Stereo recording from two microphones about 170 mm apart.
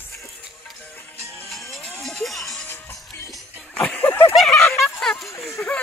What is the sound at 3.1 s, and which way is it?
Music, 10° left (ahead or behind).